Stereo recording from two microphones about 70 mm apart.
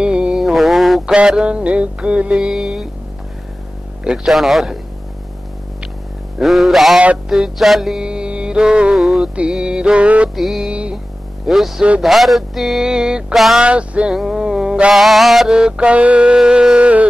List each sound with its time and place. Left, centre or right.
0.0 s mantra: centre
1.1 s music: centre
4.0 s music: centre
6.4 s music: centre
9.3 s music: centre
10.3 s music: centre
10.7 s music: centre
11.4 s music: centre
13.6 s music: centre